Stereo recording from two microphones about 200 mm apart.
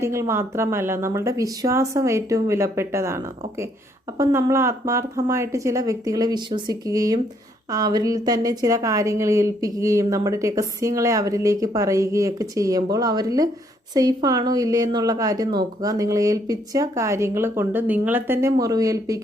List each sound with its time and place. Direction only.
0.0 s a woman's voice: 15° right (ahead or behind)
4.2 s a woman's voice: 15° right (ahead or behind)